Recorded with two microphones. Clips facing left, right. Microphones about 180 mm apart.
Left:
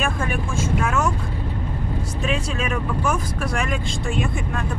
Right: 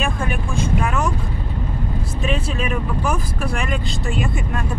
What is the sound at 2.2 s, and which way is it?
Vehicle, 5° right (ahead or behind).